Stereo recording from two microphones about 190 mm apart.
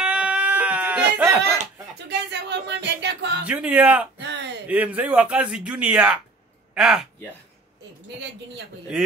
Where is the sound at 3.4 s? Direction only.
5° right (ahead or behind).